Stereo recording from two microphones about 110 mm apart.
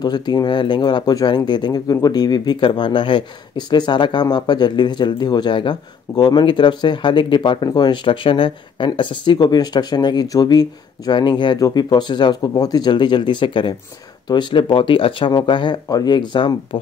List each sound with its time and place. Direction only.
0.0 s speech: 40° left (ahead or behind)